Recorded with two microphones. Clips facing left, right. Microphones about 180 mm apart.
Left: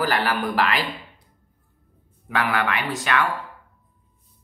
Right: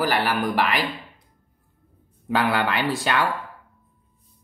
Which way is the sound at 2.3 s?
30° right (ahead or behind).